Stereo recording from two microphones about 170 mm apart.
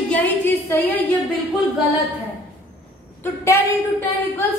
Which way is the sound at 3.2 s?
15° left (ahead or behind).